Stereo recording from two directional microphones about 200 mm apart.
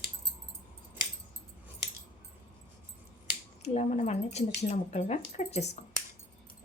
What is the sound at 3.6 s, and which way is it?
Speech, 35° left (ahead or behind).